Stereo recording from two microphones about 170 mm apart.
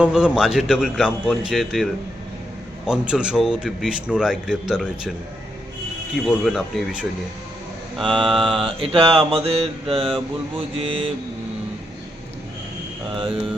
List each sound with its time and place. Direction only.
0.0 s speech: 5° right (ahead or behind)
6.2 s speech: centre (ahead or behind)
8.8 s speech: 35° right (ahead or behind)